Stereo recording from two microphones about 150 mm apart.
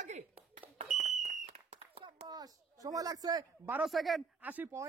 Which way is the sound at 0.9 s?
50° right (ahead or behind).